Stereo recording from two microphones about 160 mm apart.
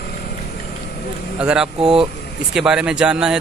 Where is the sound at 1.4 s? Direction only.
5° right (ahead or behind).